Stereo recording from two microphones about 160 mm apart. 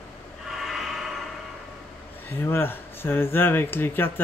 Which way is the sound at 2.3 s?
15° left (ahead or behind).